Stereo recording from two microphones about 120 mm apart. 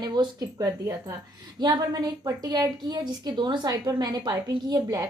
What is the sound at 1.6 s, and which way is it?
A woman's voice, 35° right (ahead or behind).